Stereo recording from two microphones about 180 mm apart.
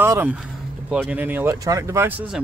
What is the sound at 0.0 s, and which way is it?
Speech, 10° right (ahead or behind).